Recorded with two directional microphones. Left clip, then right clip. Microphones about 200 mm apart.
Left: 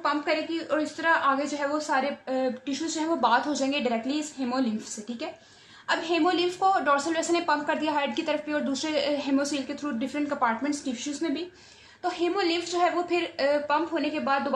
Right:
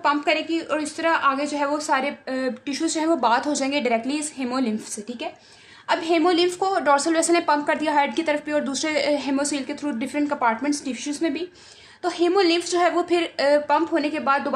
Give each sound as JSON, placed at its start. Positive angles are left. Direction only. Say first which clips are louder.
{"t": 0.0, "sound": "a woman's voice", "louder": "right 5 dB", "side_deg": -45}
{"t": 5.9, "sound": "a woman's voice", "louder": "right 5 dB", "side_deg": -45}